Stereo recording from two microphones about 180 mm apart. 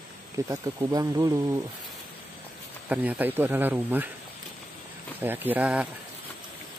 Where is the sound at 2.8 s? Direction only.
10° right (ahead or behind).